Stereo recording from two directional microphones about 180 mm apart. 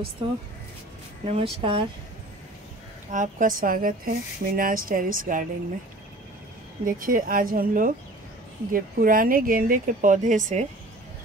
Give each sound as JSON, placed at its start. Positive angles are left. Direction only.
{"t": 1.2, "sound": "speech", "side_deg": -30}
{"t": 3.1, "sound": "speech", "side_deg": -45}
{"t": 6.8, "sound": "speech", "side_deg": -50}